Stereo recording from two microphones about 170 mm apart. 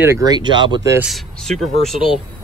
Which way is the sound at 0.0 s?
20° right (ahead or behind).